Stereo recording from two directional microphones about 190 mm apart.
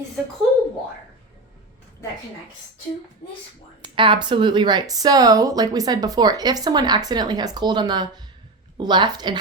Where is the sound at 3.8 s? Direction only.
25° right (ahead or behind).